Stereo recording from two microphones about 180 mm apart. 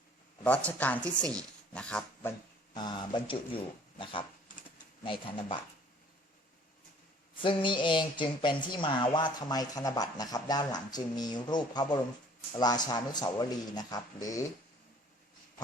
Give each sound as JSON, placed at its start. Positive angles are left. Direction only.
{"t": 0.4, "sound": "a woman's voice", "side_deg": 5}
{"t": 2.7, "sound": "speech", "side_deg": 25}
{"t": 7.4, "sound": "speech", "side_deg": 25}